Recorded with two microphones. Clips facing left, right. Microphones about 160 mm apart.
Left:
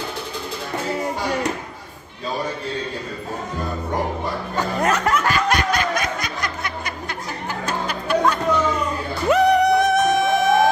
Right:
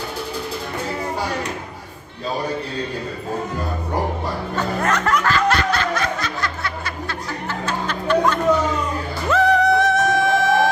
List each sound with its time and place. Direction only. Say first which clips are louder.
4.8 s music: even; 15° left (ahead or behind)